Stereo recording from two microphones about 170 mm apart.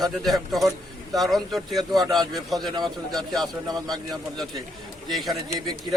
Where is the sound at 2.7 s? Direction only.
25° right (ahead or behind).